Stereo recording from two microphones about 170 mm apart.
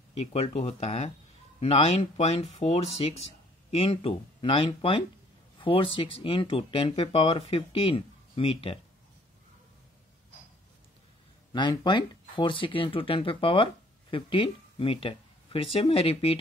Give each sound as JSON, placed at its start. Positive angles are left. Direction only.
{"t": 0.3, "sound": "speech", "side_deg": 40}
{"t": 11.5, "sound": "speech", "side_deg": 25}